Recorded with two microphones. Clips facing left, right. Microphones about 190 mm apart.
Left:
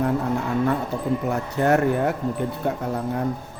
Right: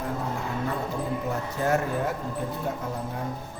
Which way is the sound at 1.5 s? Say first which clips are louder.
Left 7 dB; 65° left (ahead or behind).